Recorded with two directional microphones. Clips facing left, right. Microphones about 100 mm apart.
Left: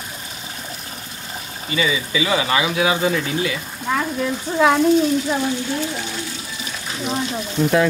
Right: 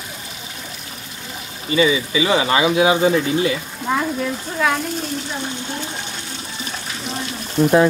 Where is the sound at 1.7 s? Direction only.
30° right (ahead or behind).